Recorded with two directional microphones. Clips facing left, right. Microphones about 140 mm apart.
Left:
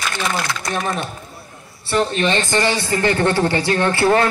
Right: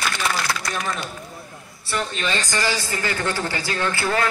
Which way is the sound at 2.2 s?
25° left (ahead or behind).